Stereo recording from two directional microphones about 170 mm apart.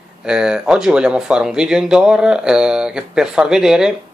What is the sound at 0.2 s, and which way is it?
Speech, 5° right (ahead or behind).